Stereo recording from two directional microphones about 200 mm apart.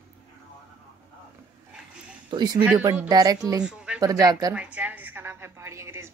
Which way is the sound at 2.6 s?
10° right (ahead or behind).